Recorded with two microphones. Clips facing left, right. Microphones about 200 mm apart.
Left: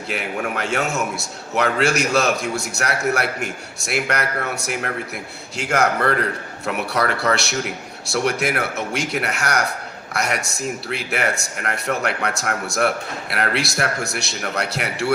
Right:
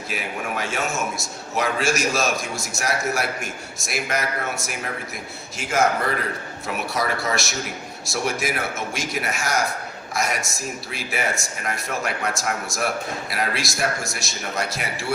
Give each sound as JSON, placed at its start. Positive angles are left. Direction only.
{"t": 0.1, "sound": "a man's voice", "side_deg": 65}